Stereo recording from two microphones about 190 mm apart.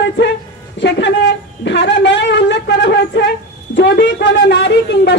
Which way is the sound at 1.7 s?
70° left (ahead or behind).